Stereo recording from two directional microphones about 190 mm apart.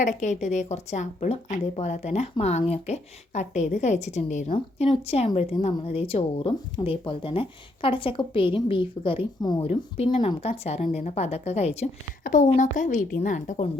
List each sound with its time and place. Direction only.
0.0 s a woman's voice: 40° left (ahead or behind)